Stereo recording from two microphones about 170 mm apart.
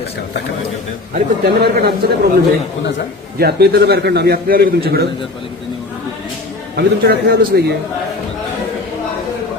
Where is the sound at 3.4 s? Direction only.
70° right (ahead or behind).